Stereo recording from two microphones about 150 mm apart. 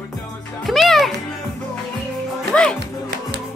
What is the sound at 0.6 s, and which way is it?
Music, centre (ahead or behind).